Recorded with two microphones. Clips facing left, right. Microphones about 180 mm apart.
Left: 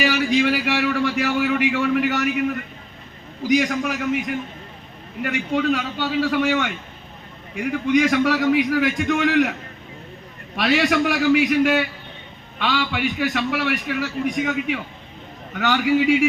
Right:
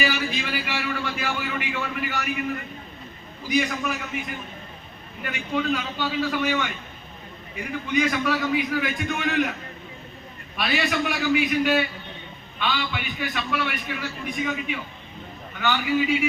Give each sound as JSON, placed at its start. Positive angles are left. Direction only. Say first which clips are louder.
{"t": 0.0, "sound": "a sound", "louder": "left 8 dB", "side_deg": 75}
{"t": 3.4, "sound": "a man's voice", "louder": "left 5 dB", "side_deg": 90}
{"t": 5.2, "sound": "a man's voice", "louder": "left 5 dB", "side_deg": 70}
{"t": 10.6, "sound": "a man's voice", "louder": "left 6 dB", "side_deg": 80}